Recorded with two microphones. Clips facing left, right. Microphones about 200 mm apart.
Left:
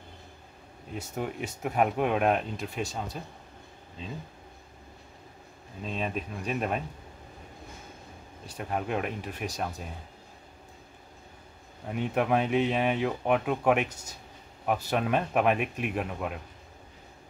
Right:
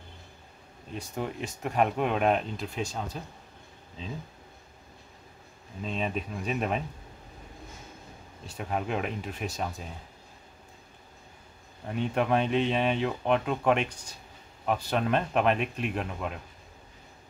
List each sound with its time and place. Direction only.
1.1 s speech: 5° left (ahead or behind)
5.8 s speech: centre (ahead or behind)
8.5 s speech: centre (ahead or behind)
11.9 s speech: 5° left (ahead or behind)